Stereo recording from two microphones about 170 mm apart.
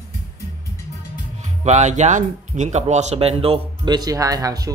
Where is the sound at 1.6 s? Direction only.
40° right (ahead or behind).